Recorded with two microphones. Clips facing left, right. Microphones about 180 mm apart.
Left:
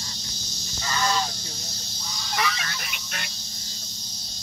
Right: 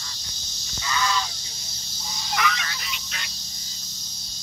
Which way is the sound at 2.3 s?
35° left (ahead or behind).